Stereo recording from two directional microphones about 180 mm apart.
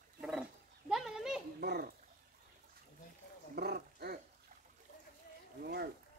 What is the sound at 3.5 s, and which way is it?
Roaring cats, 60° right (ahead or behind).